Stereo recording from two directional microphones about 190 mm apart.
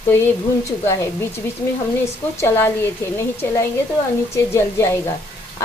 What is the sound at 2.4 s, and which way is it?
Speech, 10° left (ahead or behind).